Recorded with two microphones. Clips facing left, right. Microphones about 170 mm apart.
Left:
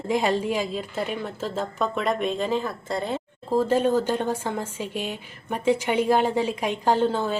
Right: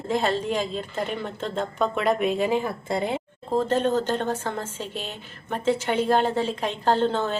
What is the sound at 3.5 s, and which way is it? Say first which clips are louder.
A woman's voice: left 2 dB; 10° left (ahead or behind).